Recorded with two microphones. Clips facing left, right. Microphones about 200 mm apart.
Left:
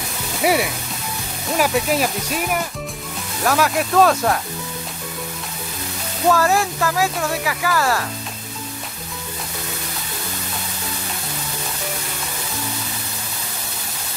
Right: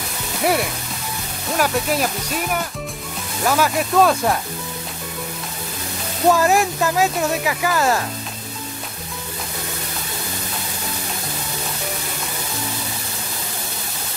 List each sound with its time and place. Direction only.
0.4 s speech: 5° left (ahead or behind)
3.4 s speech: centre (ahead or behind)
6.3 s speech: 15° right (ahead or behind)